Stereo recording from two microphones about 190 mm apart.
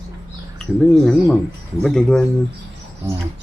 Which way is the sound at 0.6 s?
5° left (ahead or behind).